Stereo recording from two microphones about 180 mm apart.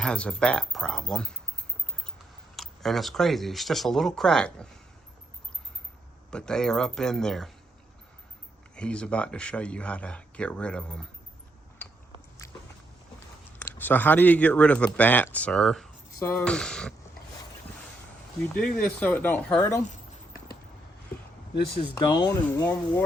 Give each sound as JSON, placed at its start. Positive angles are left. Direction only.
{"t": 0.0, "sound": "speech", "side_deg": 5}
{"t": 2.6, "sound": "speech", "side_deg": 0}
{"t": 6.3, "sound": "speech", "side_deg": 5}
{"t": 8.7, "sound": "speech", "side_deg": 5}
{"t": 12.4, "sound": "walk", "side_deg": 20}
{"t": 13.6, "sound": "speech", "side_deg": 10}
{"t": 18.5, "sound": "speech", "side_deg": 5}
{"t": 21.8, "sound": "speech", "side_deg": 25}